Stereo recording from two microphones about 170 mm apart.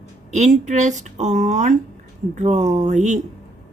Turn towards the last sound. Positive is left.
turn(degrees=-45)  # may be behind; listen again after turning